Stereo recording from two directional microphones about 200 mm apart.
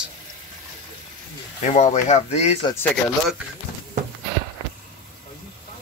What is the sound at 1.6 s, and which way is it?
Speech, 35° left (ahead or behind).